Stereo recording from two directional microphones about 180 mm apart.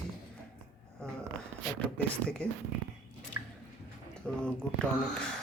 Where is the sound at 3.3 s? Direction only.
50° left (ahead or behind).